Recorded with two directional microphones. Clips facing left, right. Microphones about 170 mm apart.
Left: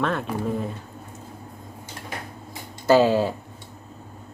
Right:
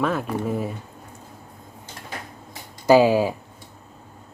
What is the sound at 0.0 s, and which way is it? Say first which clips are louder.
Speech: right 1 dB; 5° right (ahead or behind).